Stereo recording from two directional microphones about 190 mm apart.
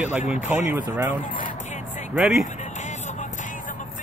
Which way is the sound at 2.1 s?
5° right (ahead or behind).